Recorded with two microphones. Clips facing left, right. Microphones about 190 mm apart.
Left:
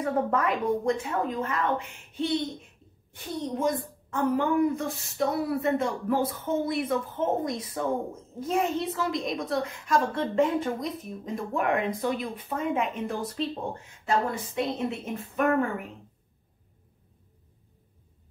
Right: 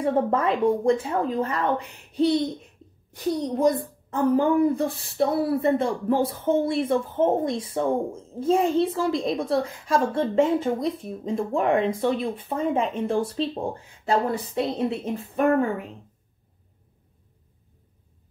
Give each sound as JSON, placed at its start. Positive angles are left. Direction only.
{"t": 0.0, "sound": "a woman's voice", "side_deg": -30}